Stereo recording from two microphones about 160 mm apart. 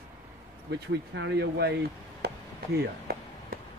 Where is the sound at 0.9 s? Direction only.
90° right.